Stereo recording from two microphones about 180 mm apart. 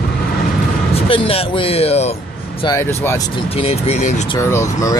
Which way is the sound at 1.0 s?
30° left (ahead or behind).